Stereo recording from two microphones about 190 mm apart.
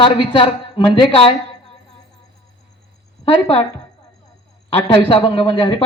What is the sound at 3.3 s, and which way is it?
Speech, 30° left (ahead or behind).